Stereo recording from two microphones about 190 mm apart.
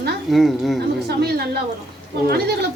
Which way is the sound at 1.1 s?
55° right (ahead or behind).